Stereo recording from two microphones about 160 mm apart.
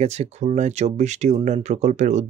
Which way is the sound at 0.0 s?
40° right (ahead or behind).